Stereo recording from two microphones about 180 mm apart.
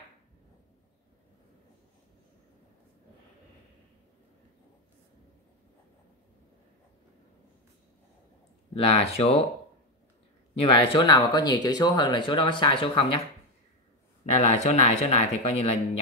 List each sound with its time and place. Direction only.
8.7 s speech: 35° left (ahead or behind)
10.5 s speech: 30° left (ahead or behind)
14.2 s speech: 35° left (ahead or behind)